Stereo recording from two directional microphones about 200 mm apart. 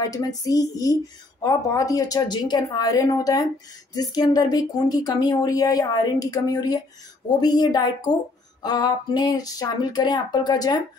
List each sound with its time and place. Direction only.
0.0 s a woman's voice: 15° left (ahead or behind)